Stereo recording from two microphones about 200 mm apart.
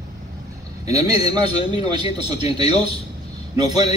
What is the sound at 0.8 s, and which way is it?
A man's voice, 20° right (ahead or behind).